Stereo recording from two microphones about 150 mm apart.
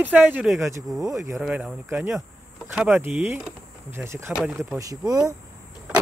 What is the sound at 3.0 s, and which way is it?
Speech, 15° right (ahead or behind).